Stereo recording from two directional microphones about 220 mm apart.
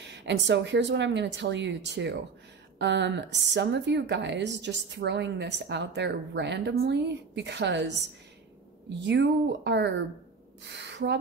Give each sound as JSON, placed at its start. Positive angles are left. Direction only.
{"t": 0.0, "sound": "a woman's voice", "side_deg": -55}